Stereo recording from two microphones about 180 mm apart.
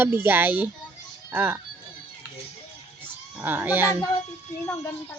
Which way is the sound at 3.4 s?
10° right (ahead or behind).